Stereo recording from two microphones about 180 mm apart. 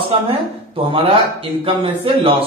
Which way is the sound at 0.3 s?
30° right (ahead or behind).